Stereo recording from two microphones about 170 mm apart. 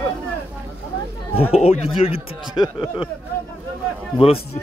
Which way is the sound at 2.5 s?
25° left (ahead or behind).